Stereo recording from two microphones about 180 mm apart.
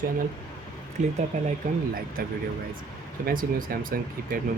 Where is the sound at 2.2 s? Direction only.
55° right (ahead or behind).